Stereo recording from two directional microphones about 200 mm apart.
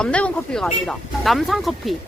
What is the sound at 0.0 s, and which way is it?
Speech, 5° left (ahead or behind).